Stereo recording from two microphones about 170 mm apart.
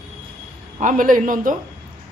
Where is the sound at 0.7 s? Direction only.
50° right (ahead or behind).